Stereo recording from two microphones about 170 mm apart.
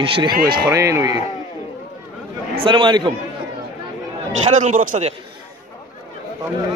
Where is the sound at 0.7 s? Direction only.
20° right (ahead or behind).